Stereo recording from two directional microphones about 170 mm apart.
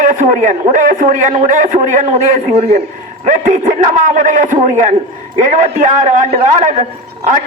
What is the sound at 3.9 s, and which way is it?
A man's voice, 50° right (ahead or behind).